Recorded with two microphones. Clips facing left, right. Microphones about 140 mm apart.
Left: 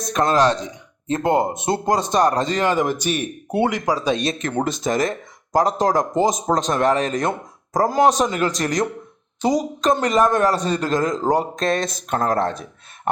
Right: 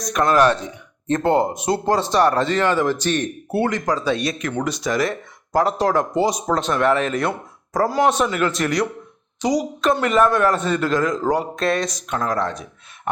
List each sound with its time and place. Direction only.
0.0 s a man's voice: 25° left (ahead or behind)
1.0 s speech: 15° left (ahead or behind)
4.4 s a man's voice: 45° left (ahead or behind)